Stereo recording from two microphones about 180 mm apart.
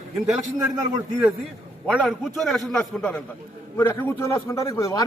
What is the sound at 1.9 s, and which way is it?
A man's voice, 5° left (ahead or behind).